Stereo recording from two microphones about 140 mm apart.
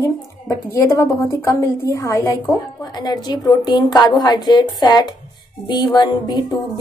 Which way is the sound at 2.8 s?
30° left (ahead or behind).